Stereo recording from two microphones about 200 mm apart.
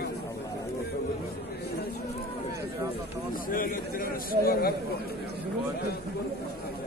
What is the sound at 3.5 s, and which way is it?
A man's voice, 45° left (ahead or behind).